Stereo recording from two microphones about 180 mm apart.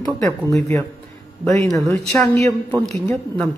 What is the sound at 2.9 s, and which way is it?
Speech, 10° left (ahead or behind).